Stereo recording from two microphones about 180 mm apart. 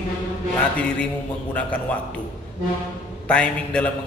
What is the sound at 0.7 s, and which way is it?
Speech, 10° left (ahead or behind).